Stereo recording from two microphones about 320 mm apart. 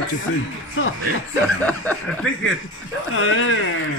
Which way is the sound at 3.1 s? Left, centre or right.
Left.